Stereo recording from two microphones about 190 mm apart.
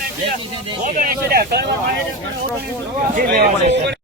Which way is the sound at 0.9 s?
55° right (ahead or behind).